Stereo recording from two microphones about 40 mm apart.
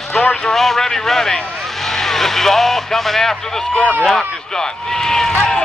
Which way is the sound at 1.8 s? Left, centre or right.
Centre.